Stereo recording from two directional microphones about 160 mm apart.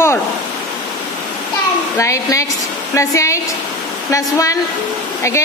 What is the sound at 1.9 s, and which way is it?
A woman's voice, 20° left (ahead or behind).